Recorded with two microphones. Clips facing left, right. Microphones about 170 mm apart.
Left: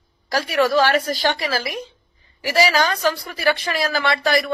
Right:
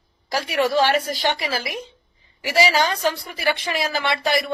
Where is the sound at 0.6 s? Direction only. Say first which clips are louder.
Left 2 dB; 25° right (ahead or behind).